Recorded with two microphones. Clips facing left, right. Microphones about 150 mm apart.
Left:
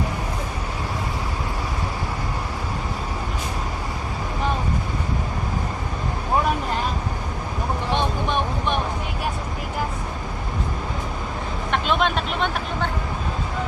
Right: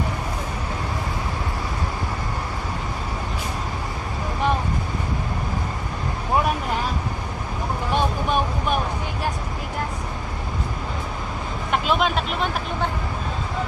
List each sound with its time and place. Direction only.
7.9 s vehicle: 5° right (ahead or behind)
11.7 s vehicle: 5° right (ahead or behind)